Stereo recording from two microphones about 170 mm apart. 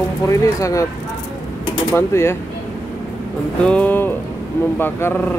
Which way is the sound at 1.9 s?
15° left (ahead or behind).